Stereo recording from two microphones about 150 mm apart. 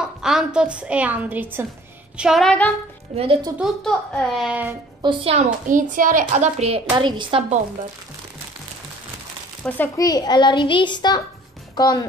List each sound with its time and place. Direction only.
0.0 s a woman's voice: 5° right (ahead or behind)
2.1 s a child's voice: centre (ahead or behind)
3.2 s a woman's voice: 35° right (ahead or behind)
3.5 s a child's voice: centre (ahead or behind)
5.0 s a woman's voice: 35° right (ahead or behind)
5.7 s a child's voice: 60° right (ahead or behind); by 6.8 s 45° right (ahead or behind)
7.0 s a woman's voice: 35° right (ahead or behind)
9.6 s speech: 10° left (ahead or behind)
9.9 s a child's voice: 25° left (ahead or behind)